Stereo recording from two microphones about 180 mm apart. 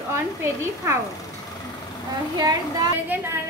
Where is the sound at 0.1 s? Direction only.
15° right (ahead or behind).